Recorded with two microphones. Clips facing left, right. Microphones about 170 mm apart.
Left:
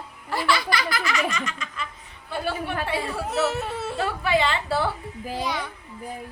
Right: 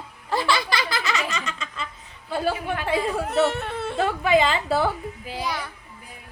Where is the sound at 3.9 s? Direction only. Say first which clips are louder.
Right 4 dB; 20° right (ahead or behind).